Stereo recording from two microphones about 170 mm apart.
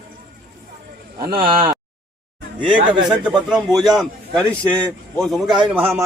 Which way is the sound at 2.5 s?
5° right (ahead or behind).